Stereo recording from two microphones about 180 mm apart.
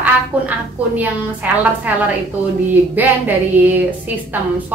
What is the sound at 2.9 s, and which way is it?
Speech, 10° right (ahead or behind).